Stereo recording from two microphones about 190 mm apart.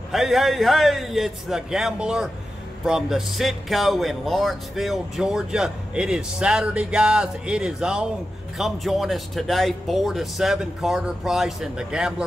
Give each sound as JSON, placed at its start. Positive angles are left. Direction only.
{"t": 0.1, "sound": "speech", "side_deg": 0}